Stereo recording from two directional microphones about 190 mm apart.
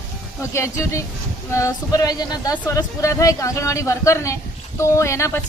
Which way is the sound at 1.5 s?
20° left (ahead or behind).